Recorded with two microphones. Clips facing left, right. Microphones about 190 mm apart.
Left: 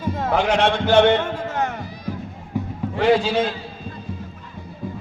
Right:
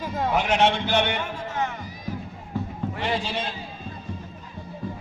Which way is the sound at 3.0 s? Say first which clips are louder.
Left 12 dB; 90° left.